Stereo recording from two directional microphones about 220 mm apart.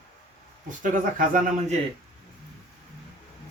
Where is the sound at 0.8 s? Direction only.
35° right (ahead or behind).